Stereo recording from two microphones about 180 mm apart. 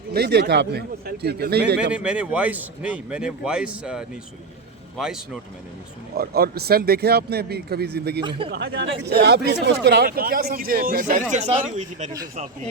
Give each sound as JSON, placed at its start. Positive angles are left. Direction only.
{"t": 0.1, "sound": "speech", "side_deg": -65}
{"t": 1.9, "sound": "speech", "side_deg": -5}
{"t": 6.1, "sound": "speech", "side_deg": -60}
{"t": 8.2, "sound": "speech", "side_deg": -25}
{"t": 8.4, "sound": "speech", "side_deg": -65}
{"t": 11.1, "sound": "speech", "side_deg": -45}